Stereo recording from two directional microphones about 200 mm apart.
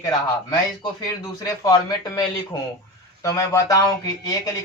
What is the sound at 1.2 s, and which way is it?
Speech, 15° left (ahead or behind).